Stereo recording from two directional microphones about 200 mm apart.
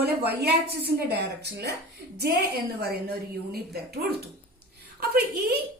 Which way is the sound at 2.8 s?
50° right (ahead or behind).